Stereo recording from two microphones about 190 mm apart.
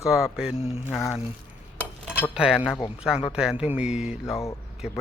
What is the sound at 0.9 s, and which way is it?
Speech, 10° left (ahead or behind).